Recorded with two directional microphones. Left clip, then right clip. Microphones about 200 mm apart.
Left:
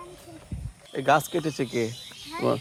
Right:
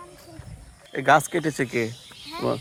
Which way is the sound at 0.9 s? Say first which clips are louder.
Right 3 dB; 20° right (ahead or behind).